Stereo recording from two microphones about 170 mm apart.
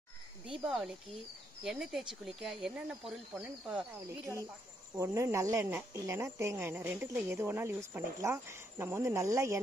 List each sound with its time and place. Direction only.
0.5 s speech: 5° right (ahead or behind)
4.9 s speech: 15° right (ahead or behind)